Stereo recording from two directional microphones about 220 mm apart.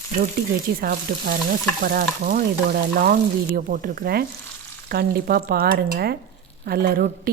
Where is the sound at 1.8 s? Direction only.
40° right (ahead or behind).